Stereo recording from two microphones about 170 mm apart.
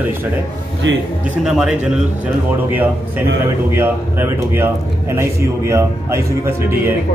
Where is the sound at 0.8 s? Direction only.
90° right.